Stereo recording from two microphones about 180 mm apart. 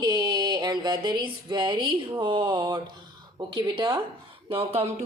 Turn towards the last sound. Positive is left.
turn(degrees=-35)  # may be behind; listen again after turning